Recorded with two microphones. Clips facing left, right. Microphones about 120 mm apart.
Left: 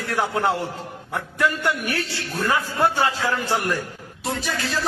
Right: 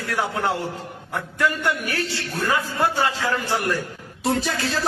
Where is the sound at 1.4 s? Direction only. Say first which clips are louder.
Even; 20° left (ahead or behind).